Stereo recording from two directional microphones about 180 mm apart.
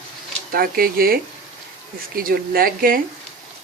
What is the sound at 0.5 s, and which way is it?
Speech, 55° right (ahead or behind).